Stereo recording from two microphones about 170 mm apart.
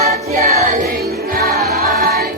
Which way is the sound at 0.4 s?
50° right (ahead or behind).